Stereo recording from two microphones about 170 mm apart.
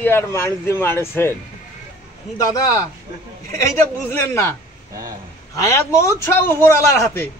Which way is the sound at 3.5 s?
15° left (ahead or behind).